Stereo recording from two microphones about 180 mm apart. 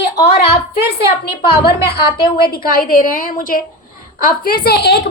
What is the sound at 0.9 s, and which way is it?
A woman's voice, 60° left (ahead or behind).